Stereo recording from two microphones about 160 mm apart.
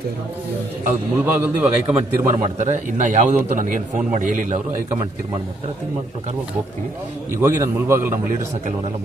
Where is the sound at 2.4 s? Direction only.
50° right (ahead or behind).